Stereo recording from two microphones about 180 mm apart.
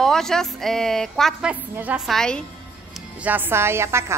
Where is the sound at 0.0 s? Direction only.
5° left (ahead or behind).